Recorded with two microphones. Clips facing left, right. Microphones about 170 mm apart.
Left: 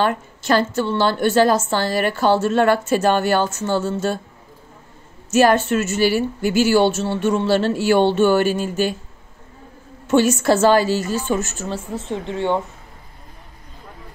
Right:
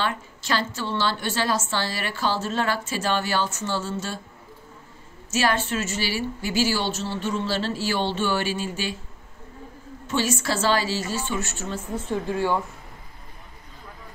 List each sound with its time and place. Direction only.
0.0 s a woman's voice: 50° left (ahead or behind)
5.3 s a woman's voice: 50° left (ahead or behind)
10.0 s a woman's voice: 55° left (ahead or behind)
11.7 s speech: 25° left (ahead or behind)